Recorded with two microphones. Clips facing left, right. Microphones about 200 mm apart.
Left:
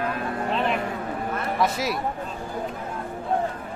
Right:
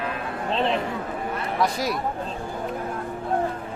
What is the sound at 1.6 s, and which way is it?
Speech, centre (ahead or behind).